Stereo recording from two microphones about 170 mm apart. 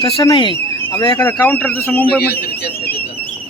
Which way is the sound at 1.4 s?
10° left (ahead or behind).